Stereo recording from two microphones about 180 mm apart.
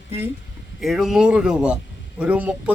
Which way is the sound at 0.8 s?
Centre (ahead or behind).